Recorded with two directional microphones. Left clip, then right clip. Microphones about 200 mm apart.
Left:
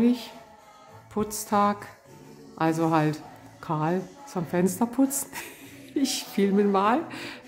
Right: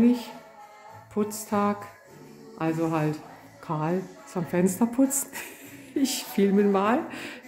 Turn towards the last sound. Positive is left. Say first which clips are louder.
# left 1 dB
turn(degrees=5)  # may be behind; listen again after turning